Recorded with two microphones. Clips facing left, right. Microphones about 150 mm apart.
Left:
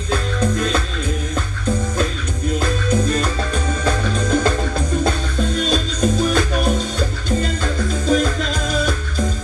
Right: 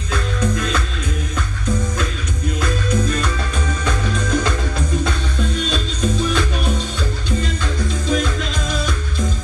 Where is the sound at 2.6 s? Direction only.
35° left (ahead or behind).